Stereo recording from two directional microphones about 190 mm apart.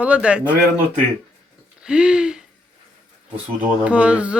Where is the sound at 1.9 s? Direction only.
5° right (ahead or behind).